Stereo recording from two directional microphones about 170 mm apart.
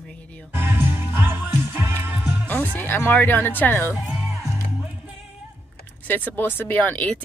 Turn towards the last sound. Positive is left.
turn(degrees=10)  # may be behind; listen again after turning